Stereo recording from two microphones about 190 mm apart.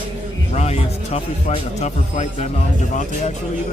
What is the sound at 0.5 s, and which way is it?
Speech, 35° left (ahead or behind).